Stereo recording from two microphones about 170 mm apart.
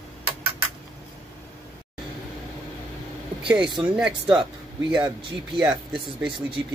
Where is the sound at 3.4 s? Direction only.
5° right (ahead or behind).